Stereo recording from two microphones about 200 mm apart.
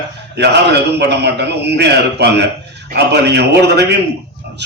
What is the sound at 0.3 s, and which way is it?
A man's voice, 60° right (ahead or behind).